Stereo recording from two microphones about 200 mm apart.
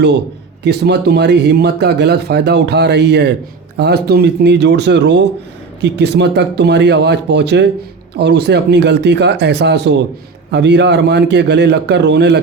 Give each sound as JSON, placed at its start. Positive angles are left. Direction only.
{"t": 0.6, "sound": "speech", "side_deg": -55}